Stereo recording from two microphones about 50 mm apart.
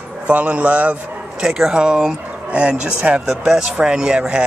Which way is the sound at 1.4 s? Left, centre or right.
Centre.